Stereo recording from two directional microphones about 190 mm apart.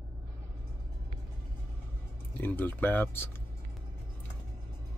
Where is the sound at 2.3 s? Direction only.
10° left (ahead or behind).